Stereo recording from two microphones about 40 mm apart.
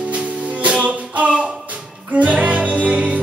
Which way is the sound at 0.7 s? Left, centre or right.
Right.